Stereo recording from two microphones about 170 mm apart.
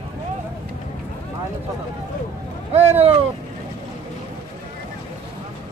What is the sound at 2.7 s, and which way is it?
Vehicle, 35° right (ahead or behind).